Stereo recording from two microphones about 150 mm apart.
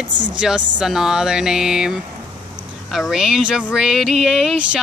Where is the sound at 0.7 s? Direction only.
5° right (ahead or behind).